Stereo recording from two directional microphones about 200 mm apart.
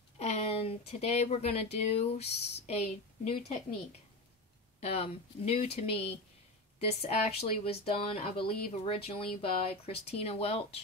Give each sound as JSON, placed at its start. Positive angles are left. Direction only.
{"t": 0.2, "sound": "speech", "side_deg": 30}
{"t": 4.7, "sound": "speech", "side_deg": 30}